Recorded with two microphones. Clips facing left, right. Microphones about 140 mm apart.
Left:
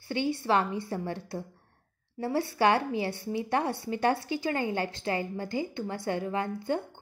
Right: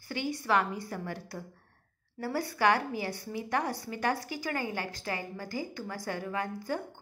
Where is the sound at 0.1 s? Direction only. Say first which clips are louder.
Left 3 dB; 30° left (ahead or behind).